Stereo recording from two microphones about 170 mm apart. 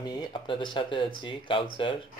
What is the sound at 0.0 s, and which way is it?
Speech, 25° left (ahead or behind).